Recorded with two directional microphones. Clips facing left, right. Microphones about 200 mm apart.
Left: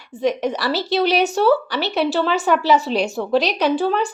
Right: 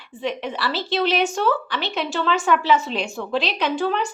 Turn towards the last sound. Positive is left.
turn(degrees=30)  # may be behind; listen again after turning